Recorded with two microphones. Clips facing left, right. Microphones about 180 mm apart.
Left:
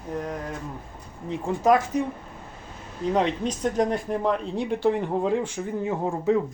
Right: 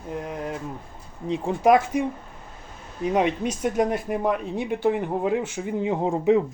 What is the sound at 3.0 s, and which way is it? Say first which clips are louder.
Speech: right 1 dB; 10° right (ahead or behind).